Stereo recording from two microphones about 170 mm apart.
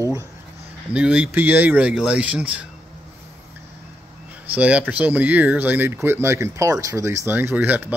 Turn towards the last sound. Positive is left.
turn(degrees=-10)  # may be behind; listen again after turning